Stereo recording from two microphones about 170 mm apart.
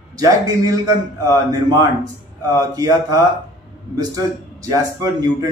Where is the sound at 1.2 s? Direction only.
20° right (ahead or behind).